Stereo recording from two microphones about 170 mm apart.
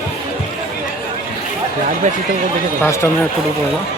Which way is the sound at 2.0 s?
45° right (ahead or behind).